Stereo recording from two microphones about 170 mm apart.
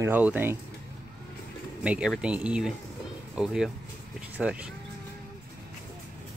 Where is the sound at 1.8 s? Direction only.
5° right (ahead or behind).